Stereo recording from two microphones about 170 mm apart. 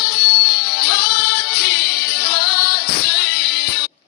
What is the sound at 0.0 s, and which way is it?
Music, 65° left (ahead or behind).